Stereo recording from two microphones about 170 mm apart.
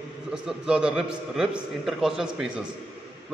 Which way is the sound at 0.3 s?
5° right (ahead or behind).